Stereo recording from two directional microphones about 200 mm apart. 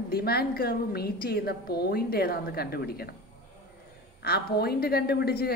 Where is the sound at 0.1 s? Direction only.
50° left (ahead or behind).